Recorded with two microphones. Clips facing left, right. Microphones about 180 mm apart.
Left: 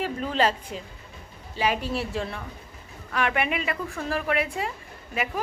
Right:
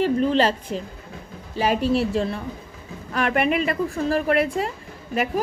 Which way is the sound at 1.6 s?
40° right (ahead or behind).